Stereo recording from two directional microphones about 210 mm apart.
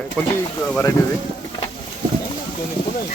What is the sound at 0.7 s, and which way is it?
Speech, 10° left (ahead or behind).